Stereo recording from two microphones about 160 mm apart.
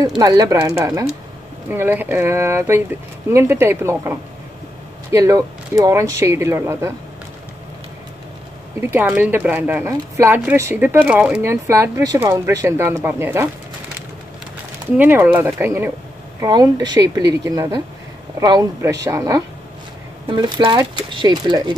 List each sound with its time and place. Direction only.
0.2 s speech: 20° right (ahead or behind)
8.9 s speech: 10° right (ahead or behind)
14.9 s speech: 15° right (ahead or behind)